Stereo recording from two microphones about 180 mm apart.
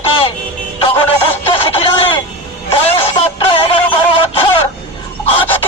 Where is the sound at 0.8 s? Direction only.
30° left (ahead or behind).